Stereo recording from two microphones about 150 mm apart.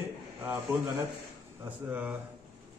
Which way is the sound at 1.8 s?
10° right (ahead or behind).